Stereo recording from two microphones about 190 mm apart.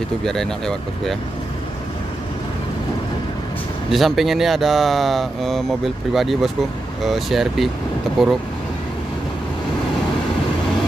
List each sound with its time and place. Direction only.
0.2 s speech: centre (ahead or behind)
3.9 s speech: centre (ahead or behind)